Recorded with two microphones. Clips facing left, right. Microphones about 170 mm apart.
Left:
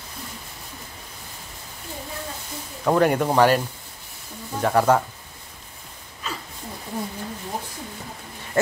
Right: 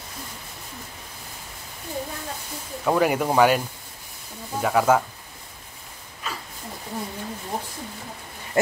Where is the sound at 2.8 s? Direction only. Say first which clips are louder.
Left 2 dB; 5° right (ahead or behind).